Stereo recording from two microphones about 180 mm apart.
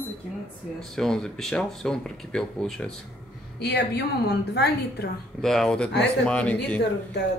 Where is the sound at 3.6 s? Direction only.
65° left (ahead or behind).